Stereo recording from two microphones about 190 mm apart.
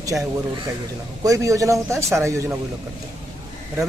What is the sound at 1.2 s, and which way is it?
Speech, 15° right (ahead or behind).